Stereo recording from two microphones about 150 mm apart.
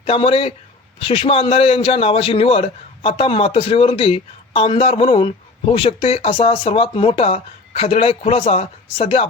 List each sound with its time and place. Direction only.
0.0 s a man's voice: 40° left (ahead or behind)